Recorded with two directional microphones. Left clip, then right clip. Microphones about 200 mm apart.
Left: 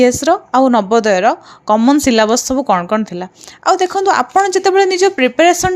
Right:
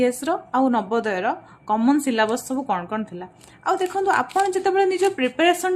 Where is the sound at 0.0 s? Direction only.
40° left (ahead or behind).